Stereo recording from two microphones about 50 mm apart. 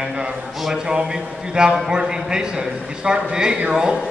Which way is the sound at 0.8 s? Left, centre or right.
Centre.